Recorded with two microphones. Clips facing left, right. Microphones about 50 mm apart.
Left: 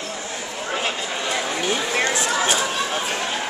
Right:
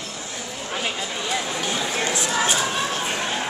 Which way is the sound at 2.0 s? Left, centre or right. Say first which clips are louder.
Left 3 dB; left.